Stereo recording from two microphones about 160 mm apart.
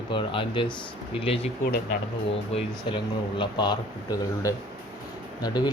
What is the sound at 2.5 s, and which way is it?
Speech, 30° left (ahead or behind).